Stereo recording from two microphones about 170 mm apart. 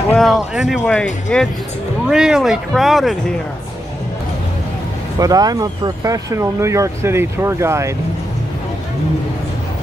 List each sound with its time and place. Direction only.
0.1 s speech: centre (ahead or behind)
5.2 s speech: 20° right (ahead or behind)